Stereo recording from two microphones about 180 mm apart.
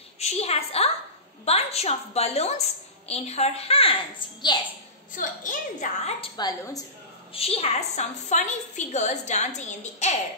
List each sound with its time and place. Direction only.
0.2 s a woman's voice: 35° left (ahead or behind)
5.1 s a woman's voice: 45° left (ahead or behind)
6.2 s a woman's voice: 20° left (ahead or behind)
7.3 s a woman's voice: 35° left (ahead or behind)